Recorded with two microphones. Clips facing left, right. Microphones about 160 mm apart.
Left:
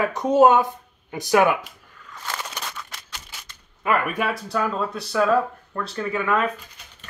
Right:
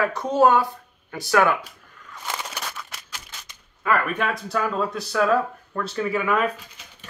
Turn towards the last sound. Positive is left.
turn(degrees=-5)  # may be behind; listen again after turning